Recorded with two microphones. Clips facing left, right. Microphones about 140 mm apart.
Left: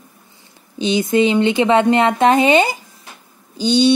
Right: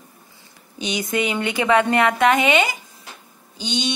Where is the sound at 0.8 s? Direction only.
25° left (ahead or behind).